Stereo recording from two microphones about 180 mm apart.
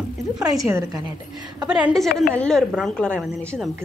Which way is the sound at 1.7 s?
Centre (ahead or behind).